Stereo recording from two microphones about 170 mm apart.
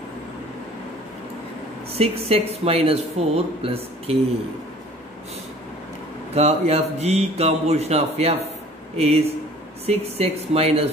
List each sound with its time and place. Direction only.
2.0 s speech: 35° right (ahead or behind)
6.3 s speech: 40° right (ahead or behind)